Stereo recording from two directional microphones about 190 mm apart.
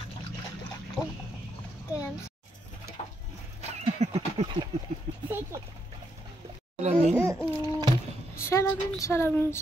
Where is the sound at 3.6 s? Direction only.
35° right (ahead or behind).